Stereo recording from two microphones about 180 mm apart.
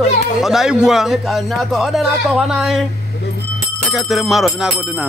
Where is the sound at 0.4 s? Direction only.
Centre (ahead or behind).